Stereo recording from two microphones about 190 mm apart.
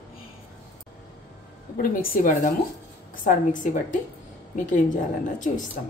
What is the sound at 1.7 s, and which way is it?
A woman's voice, 50° left (ahead or behind).